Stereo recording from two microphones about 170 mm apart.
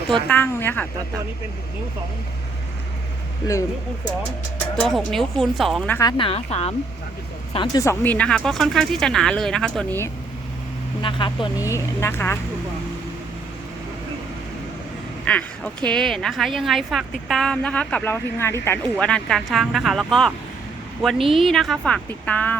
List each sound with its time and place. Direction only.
0.3 s speech: 10° left (ahead or behind)
4.2 s speech: 10° left (ahead or behind)
6.0 s speech: 25° left (ahead or behind)
7.5 s speech: 25° left (ahead or behind); by 10.0 s 5° left (ahead or behind)
11.0 s speech: 30° left (ahead or behind)
11.7 s speech: 15° left (ahead or behind)
15.2 s speech: 5° left (ahead or behind)